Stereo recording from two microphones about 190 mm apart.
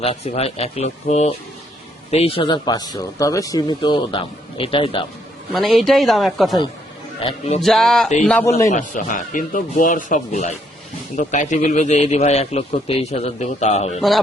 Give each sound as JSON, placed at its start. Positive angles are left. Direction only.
{"t": 0.0, "sound": "a man's voice", "side_deg": 30}
{"t": 5.5, "sound": "a woman's voice", "side_deg": 0}
{"t": 7.2, "sound": "a man's voice", "side_deg": 30}
{"t": 7.6, "sound": "a woman's voice", "side_deg": 0}
{"t": 8.7, "sound": "a man's voice", "side_deg": 40}